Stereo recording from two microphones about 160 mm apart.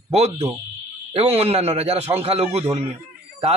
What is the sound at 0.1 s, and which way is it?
Speech, 40° right (ahead or behind).